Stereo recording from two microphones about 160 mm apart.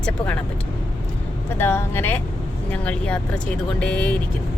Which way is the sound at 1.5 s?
15° left (ahead or behind).